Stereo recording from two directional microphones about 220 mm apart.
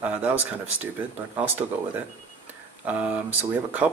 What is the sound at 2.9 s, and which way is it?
Speech, 5° right (ahead or behind).